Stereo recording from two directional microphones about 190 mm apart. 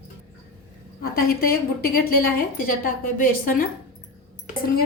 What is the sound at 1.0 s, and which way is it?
A woman's voice, 50° left (ahead or behind).